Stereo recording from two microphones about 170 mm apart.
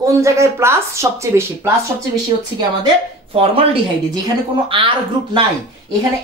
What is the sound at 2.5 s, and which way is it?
Speech, 30° right (ahead or behind).